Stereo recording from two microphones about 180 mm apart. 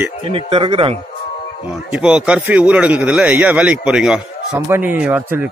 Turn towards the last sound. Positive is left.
turn(degrees=-10)  # may be behind; listen again after turning